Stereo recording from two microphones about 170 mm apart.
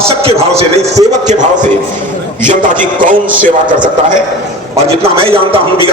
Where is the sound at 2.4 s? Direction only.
50° right (ahead or behind).